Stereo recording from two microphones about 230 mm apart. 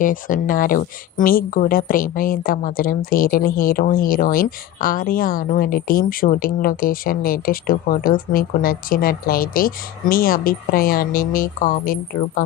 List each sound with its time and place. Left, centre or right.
0.0 s speech: left